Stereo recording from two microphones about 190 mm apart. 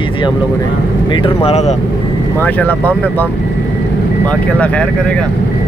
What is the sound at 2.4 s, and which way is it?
Speech, 10° left (ahead or behind).